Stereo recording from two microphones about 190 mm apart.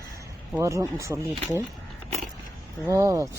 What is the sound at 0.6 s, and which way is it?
Speech, 15° right (ahead or behind).